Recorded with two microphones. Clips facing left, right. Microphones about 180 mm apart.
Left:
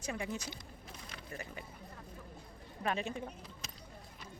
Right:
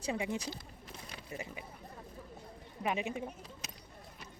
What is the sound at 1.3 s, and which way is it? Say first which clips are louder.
Speech: right 2 dB; 10° right (ahead or behind).